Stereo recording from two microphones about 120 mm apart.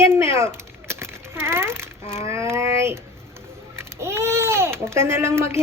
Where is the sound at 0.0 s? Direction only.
20° right (ahead or behind).